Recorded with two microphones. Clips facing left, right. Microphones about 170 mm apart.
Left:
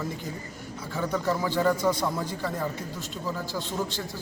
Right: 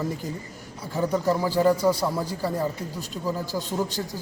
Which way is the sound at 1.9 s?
10° right (ahead or behind).